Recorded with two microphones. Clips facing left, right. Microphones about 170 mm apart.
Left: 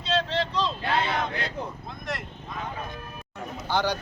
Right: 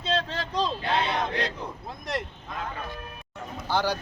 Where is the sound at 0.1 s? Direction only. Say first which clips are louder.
Left 3 dB; 45° right (ahead or behind).